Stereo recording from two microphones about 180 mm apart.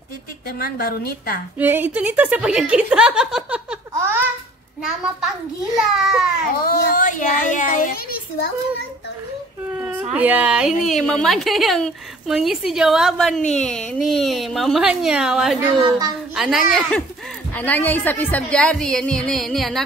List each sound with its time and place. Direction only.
0.5 s a woman's voice: 55° left (ahead or behind)
1.6 s speech: 10° right (ahead or behind)
3.9 s a sound: 10° right (ahead or behind)
4.8 s speech: 5° right (ahead or behind)
6.6 s speech: 50° left (ahead or behind)
9.8 s a sound: 10° right (ahead or behind)
10.1 s speech: 10° right (ahead or behind)
17.6 s speech: 10° left (ahead or behind)